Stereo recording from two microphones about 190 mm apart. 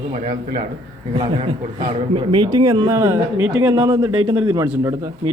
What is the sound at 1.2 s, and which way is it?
Speech, 25° right (ahead or behind).